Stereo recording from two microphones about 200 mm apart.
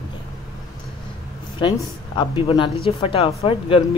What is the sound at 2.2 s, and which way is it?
Speech, 25° left (ahead or behind).